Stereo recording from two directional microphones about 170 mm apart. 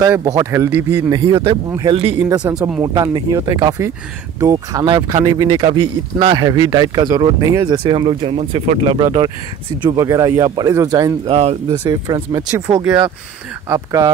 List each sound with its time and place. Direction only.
0.0 s speech: 20° right (ahead or behind)
1.1 s speech: 30° right (ahead or behind)
11.2 s speech: 40° right (ahead or behind)
11.9 s speech: 25° right (ahead or behind)
12.4 s speech: 10° right (ahead or behind)
13.7 s speech: 20° right (ahead or behind)